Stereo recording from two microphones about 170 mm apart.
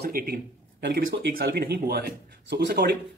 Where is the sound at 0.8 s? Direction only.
75° right (ahead or behind).